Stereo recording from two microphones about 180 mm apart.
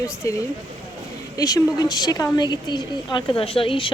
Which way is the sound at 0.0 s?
15° left (ahead or behind).